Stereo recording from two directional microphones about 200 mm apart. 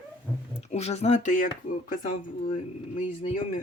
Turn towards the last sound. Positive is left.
turn(degrees=35)  # may be behind; listen again after turning